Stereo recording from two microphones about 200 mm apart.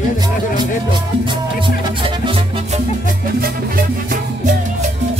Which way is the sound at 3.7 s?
45° right (ahead or behind).